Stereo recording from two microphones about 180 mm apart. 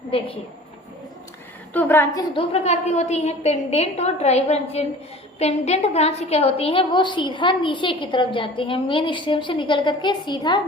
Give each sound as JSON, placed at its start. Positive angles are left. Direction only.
{"t": 0.1, "sound": "a woman's voice", "side_deg": 30}
{"t": 1.7, "sound": "a woman's voice", "side_deg": 10}
{"t": 2.3, "sound": "a woman's voice", "side_deg": 35}